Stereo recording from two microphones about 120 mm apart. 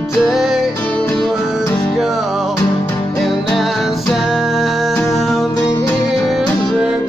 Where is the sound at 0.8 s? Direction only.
10° left (ahead or behind).